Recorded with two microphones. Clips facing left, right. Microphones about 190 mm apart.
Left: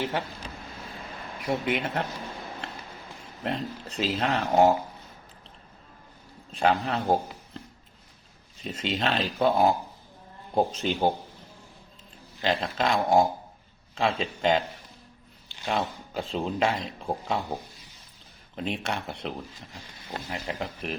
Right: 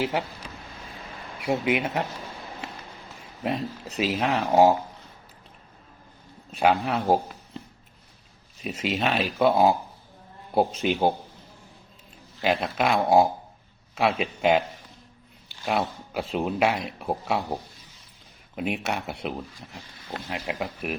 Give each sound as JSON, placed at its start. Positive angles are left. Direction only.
{"t": 1.4, "sound": "speech", "side_deg": -10}
{"t": 3.4, "sound": "speech", "side_deg": -10}
{"t": 6.5, "sound": "a man's voice", "side_deg": -10}
{"t": 8.6, "sound": "speech", "side_deg": -10}
{"t": 12.4, "sound": "speech", "side_deg": -10}
{"t": 15.6, "sound": "speech", "side_deg": -15}
{"t": 20.3, "sound": "speech", "side_deg": -10}